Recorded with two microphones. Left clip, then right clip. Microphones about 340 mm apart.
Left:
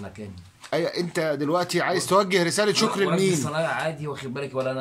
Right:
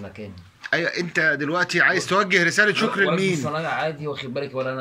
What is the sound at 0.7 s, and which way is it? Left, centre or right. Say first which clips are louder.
Speech: right 3 dB; left.